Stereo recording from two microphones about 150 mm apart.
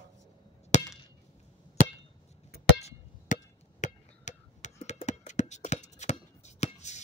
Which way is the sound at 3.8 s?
55° left (ahead or behind).